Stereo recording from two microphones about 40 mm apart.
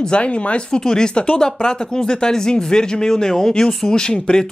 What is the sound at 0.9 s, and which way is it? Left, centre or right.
Speech, centre.